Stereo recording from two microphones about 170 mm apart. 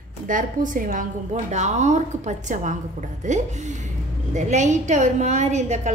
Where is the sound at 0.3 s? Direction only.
50° right (ahead or behind).